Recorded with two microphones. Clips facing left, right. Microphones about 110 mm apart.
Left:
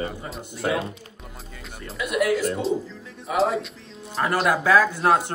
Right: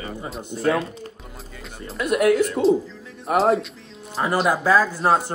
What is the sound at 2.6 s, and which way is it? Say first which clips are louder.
Speech: right 7 dB; centre (ahead or behind).